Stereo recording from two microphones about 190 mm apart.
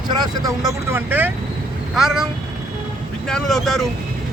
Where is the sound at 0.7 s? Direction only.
10° right (ahead or behind).